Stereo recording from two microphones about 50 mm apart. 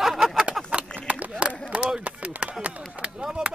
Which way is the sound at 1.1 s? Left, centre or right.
Right.